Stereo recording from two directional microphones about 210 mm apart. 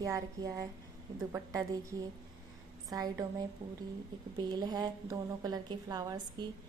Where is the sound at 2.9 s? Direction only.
15° right (ahead or behind).